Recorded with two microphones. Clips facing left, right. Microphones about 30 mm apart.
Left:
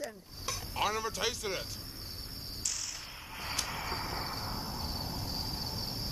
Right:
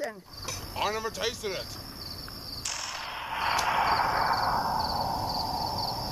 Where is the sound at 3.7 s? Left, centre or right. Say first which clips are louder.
Right 13 dB; right.